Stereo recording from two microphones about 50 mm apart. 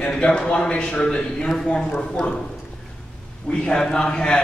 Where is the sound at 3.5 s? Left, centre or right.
Centre.